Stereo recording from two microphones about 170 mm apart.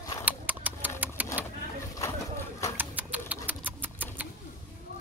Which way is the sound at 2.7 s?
10° right (ahead or behind).